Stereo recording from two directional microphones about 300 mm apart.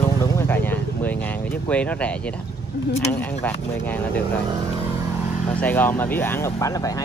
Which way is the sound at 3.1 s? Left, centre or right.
Centre.